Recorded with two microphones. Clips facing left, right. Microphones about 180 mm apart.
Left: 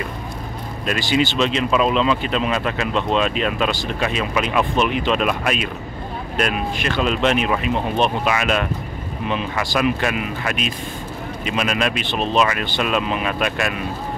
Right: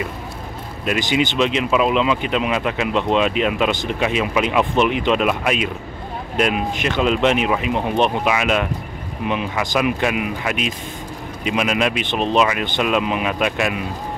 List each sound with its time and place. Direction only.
0.8 s speech: 15° right (ahead or behind)